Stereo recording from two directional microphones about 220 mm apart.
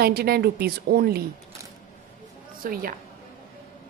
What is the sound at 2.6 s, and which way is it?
Speech, 40° right (ahead or behind).